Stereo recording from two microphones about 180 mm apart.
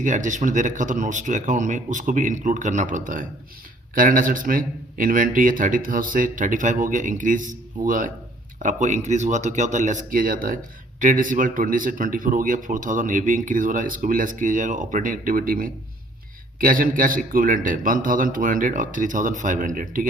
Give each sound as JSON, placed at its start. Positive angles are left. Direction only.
{"t": 0.0, "sound": "a man's voice", "side_deg": -45}